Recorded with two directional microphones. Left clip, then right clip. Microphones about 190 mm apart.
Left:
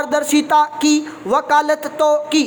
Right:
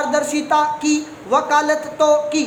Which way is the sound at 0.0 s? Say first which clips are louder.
Left 2 dB; 40° left (ahead or behind).